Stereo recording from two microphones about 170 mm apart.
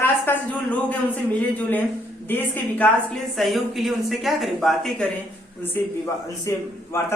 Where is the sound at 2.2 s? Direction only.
10° left (ahead or behind).